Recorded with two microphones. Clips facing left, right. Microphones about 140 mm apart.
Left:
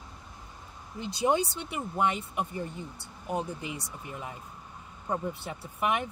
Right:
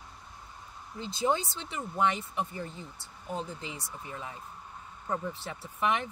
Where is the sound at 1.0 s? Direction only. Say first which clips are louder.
Left 3 dB; 15° left (ahead or behind).